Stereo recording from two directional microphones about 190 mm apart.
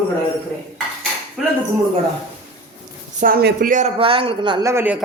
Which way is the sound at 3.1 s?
50° right (ahead or behind).